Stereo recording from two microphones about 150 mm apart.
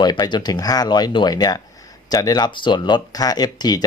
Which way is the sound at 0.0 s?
30° left (ahead or behind).